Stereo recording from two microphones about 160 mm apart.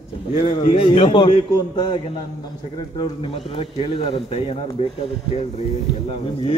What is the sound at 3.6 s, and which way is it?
A man's voice, 35° left (ahead or behind).